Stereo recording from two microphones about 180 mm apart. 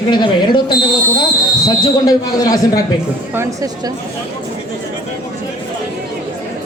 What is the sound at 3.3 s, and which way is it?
Speech, 15° right (ahead or behind).